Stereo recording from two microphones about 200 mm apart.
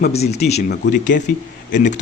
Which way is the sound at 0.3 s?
35° left (ahead or behind).